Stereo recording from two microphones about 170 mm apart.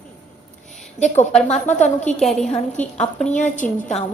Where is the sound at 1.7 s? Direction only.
45° left (ahead or behind).